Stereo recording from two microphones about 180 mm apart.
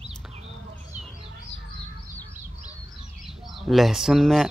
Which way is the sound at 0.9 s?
10° right (ahead or behind).